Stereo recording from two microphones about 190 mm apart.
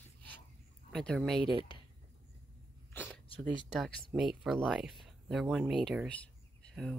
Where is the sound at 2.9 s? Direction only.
10° left (ahead or behind).